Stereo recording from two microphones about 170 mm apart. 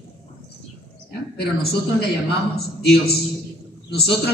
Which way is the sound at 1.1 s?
70° left (ahead or behind).